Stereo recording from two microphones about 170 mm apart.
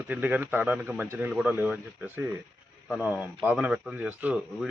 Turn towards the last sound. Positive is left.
turn(degrees=-10)  # may be behind; listen again after turning